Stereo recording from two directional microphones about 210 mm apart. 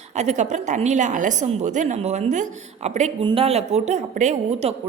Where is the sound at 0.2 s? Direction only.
35° right (ahead or behind).